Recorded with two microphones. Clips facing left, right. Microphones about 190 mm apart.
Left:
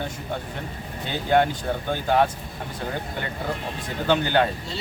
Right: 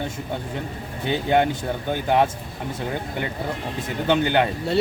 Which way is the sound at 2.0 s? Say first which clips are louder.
Right 1 dB; 20° right (ahead or behind).